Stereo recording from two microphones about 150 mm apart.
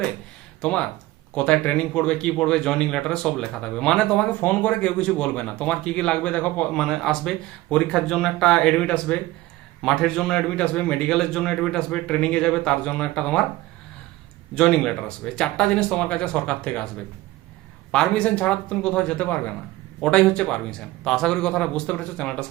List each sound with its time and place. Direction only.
0.6 s speech: 5° left (ahead or behind)
14.5 s speech: 5° left (ahead or behind)
17.9 s speech: 5° left (ahead or behind)